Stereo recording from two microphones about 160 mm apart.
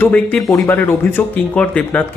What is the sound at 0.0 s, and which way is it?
Speech, 10° left (ahead or behind).